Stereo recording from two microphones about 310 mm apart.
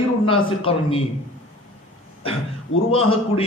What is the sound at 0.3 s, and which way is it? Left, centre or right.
Speech, centre.